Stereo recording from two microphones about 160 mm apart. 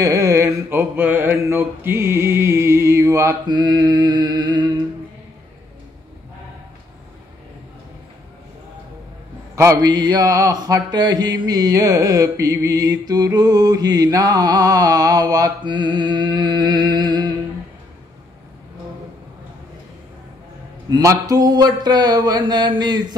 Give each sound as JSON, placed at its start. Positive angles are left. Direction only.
{"t": 0.0, "sound": "mantra", "side_deg": -20}
{"t": 9.6, "sound": "mantra", "side_deg": -20}
{"t": 20.9, "sound": "mantra", "side_deg": -20}